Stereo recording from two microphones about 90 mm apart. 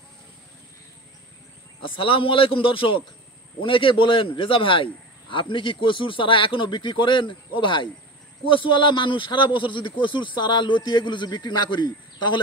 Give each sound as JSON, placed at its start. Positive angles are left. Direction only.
{"t": 1.8, "sound": "a man's voice", "side_deg": 75}